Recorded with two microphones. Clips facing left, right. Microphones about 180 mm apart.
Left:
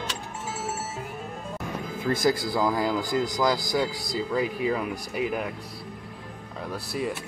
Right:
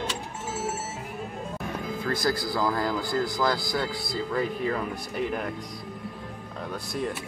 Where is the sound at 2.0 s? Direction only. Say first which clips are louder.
Left 4 dB; 20° left (ahead or behind).